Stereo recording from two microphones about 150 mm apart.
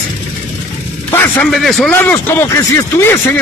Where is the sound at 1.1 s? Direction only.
15° left (ahead or behind).